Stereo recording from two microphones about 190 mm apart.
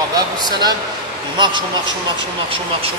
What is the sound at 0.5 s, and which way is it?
Speech, 20° right (ahead or behind).